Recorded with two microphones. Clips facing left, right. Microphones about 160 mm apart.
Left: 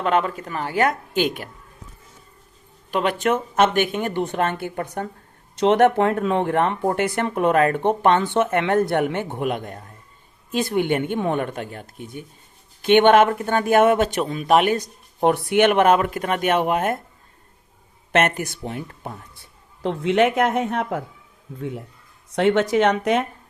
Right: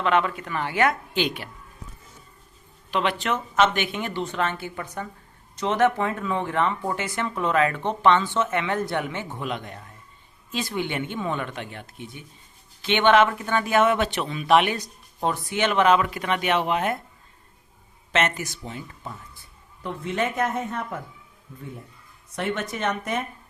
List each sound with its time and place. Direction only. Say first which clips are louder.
0.0 s speech: left 2 dB; 40° left (ahead or behind)
2.9 s speech: left 4 dB; 45° left (ahead or behind)
15.2 s speech: left 8 dB; 65° left (ahead or behind); by 17.0 s 50° left (ahead or behind)
18.1 s speech: left 5 dB; 55° left (ahead or behind); by 21.0 s 75° left (ahead or behind)
21.6 s speech: left 9 dB; 85° left